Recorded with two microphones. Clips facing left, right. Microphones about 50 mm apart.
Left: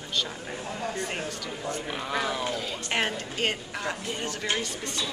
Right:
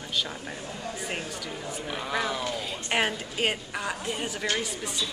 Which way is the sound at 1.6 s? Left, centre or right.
Centre.